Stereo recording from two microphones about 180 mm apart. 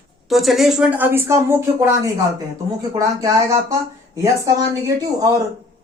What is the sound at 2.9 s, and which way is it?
Speech, 20° right (ahead or behind).